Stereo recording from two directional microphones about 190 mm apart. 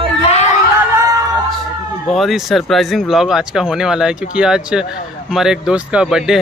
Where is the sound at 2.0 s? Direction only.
Centre (ahead or behind).